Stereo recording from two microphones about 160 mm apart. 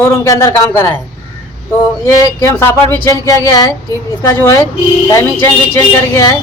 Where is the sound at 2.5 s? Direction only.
15° left (ahead or behind).